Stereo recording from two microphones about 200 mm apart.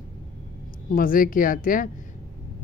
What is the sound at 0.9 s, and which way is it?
Speech, 45° left (ahead or behind).